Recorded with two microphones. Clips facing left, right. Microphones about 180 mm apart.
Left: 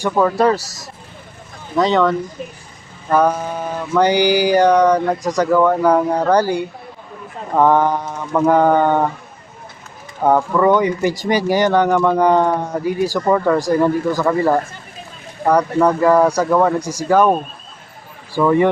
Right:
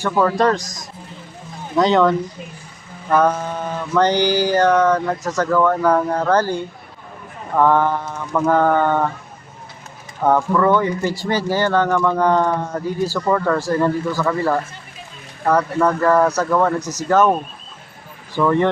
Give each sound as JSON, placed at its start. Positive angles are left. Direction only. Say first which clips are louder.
{"t": 0.0, "sound": "speech", "louder": "left 2 dB", "side_deg": 5}
{"t": 3.1, "sound": "speech", "louder": "left 1 dB", "side_deg": 10}
{"t": 10.2, "sound": "speech", "louder": "left 2 dB", "side_deg": 15}